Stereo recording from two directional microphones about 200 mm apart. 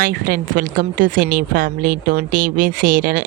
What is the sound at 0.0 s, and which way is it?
A woman's voice, 45° right (ahead or behind).